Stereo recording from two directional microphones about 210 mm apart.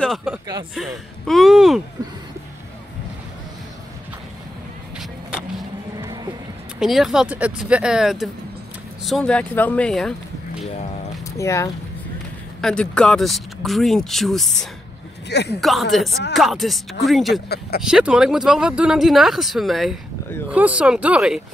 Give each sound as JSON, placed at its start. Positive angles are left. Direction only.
{"t": 0.0, "sound": "speech", "side_deg": 0}
{"t": 4.9, "sound": "vehicle", "side_deg": 0}
{"t": 6.8, "sound": "speech", "side_deg": 0}
{"t": 11.3, "sound": "speech", "side_deg": 15}
{"t": 15.2, "sound": "speech", "side_deg": 50}
{"t": 15.6, "sound": "speech", "side_deg": 0}
{"t": 17.5, "sound": "speech", "side_deg": 45}
{"t": 17.8, "sound": "speech", "side_deg": -5}